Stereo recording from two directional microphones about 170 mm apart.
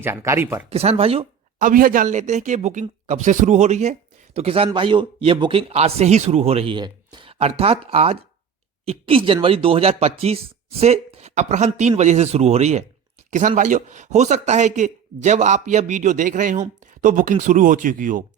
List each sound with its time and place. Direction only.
0.0 s speech: 15° right (ahead or behind)
0.7 s speech: 35° right (ahead or behind)
1.5 s a man's voice: 55° right (ahead or behind)